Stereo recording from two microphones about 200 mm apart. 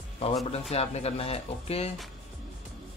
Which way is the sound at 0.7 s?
30° left (ahead or behind).